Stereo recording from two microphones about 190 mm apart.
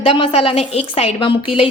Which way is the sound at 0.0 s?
30° left (ahead or behind).